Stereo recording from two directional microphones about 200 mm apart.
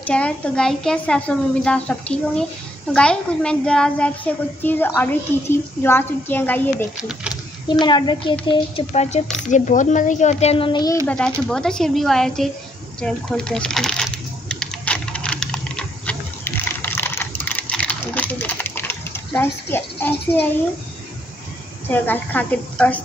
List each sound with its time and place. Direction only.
0.0 s a woman's voice: 5° left (ahead or behind)
7.0 s a woman's voice: 5° right (ahead or behind)
7.8 s speech: 20° left (ahead or behind)
11.1 s a woman's voice: 5° left (ahead or behind)
13.0 s a sound: 5° left (ahead or behind)
16.6 s typing: 10° left (ahead or behind)
21.8 s a woman's voice: 10° left (ahead or behind)